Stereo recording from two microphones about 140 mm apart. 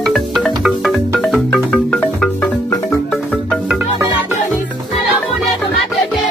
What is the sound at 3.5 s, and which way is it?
Music, 5° right (ahead or behind).